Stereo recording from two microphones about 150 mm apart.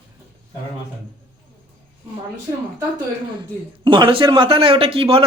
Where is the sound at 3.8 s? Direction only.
35° right (ahead or behind).